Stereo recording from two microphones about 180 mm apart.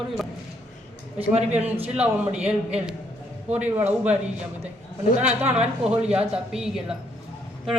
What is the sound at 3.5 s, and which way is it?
Speech, 10° right (ahead or behind).